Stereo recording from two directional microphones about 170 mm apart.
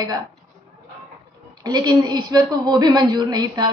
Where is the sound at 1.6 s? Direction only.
25° right (ahead or behind).